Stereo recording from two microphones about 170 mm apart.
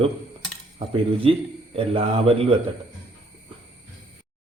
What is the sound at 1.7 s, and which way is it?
Speech, 35° right (ahead or behind).